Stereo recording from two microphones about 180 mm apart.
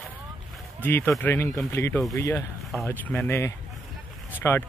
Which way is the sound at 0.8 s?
15° left (ahead or behind).